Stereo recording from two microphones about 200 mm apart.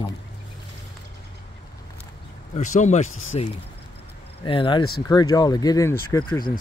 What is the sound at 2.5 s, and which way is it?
Speech, 35° left (ahead or behind).